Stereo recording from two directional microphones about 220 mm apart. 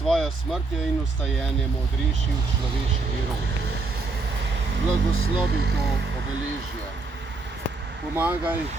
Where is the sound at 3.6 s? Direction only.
50° right (ahead or behind).